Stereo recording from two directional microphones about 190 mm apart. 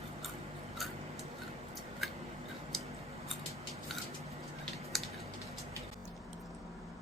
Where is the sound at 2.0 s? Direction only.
Centre (ahead or behind).